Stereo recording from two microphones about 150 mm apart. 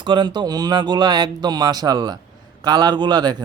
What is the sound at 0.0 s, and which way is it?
Speech, 30° right (ahead or behind).